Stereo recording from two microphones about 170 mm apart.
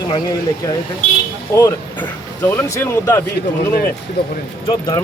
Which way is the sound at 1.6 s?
20° left (ahead or behind).